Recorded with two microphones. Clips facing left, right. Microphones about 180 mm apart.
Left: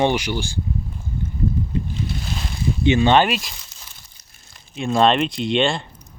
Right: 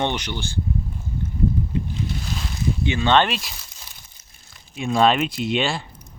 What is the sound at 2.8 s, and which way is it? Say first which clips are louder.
Speech: left 4 dB; 20° left (ahead or behind).